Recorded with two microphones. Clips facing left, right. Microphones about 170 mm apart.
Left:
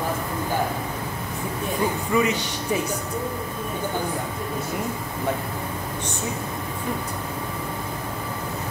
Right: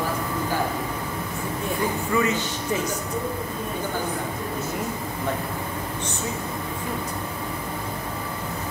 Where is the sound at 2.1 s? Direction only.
15° left (ahead or behind).